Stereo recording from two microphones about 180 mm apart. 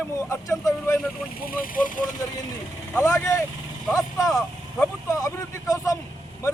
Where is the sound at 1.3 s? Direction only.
55° left (ahead or behind).